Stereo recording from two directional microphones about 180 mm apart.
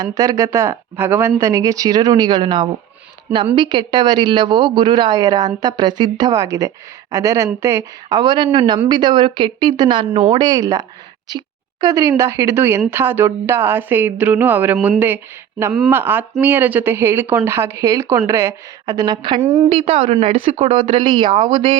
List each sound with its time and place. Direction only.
0.0 s a woman's voice: 20° right (ahead or behind)
19.6 s speech: 35° right (ahead or behind)